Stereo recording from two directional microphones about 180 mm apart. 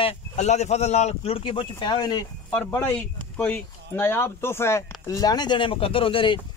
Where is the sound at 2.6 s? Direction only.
5° left (ahead or behind); by 6.4 s 30° left (ahead or behind).